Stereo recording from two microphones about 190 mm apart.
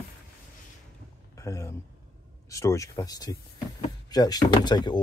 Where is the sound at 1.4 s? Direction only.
15° left (ahead or behind).